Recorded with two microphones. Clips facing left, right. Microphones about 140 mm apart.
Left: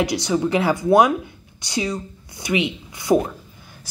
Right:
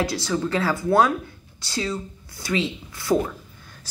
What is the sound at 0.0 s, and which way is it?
Speech, 15° left (ahead or behind).